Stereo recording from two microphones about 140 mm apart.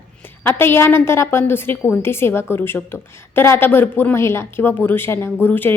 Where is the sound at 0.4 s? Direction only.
15° left (ahead or behind).